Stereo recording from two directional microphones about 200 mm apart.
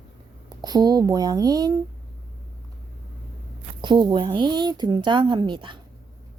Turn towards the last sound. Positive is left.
turn(degrees=-25)  # may be behind; listen again after turning